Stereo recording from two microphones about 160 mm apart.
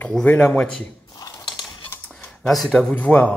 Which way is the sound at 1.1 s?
25° left (ahead or behind).